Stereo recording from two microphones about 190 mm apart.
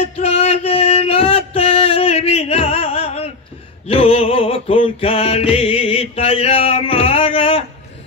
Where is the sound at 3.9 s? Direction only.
30° left (ahead or behind).